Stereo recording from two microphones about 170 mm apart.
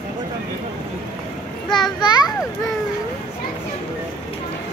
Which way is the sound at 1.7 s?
25° left (ahead or behind).